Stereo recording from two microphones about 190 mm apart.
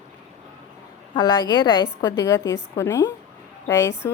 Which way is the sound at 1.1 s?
25° left (ahead or behind).